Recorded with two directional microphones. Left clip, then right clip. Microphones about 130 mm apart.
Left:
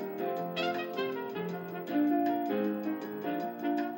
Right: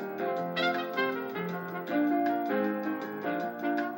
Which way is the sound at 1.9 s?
20° left (ahead or behind).